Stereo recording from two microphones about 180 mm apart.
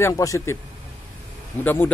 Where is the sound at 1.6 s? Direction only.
10° left (ahead or behind).